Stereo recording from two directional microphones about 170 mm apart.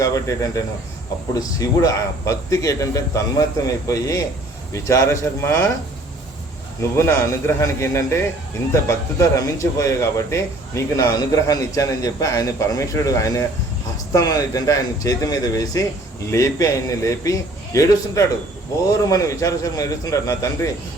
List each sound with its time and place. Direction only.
0.0 s a man's voice: 20° left (ahead or behind)
6.9 s a man's voice: 15° left (ahead or behind)